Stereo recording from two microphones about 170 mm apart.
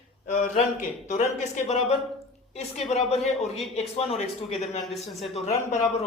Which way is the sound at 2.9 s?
35° left (ahead or behind).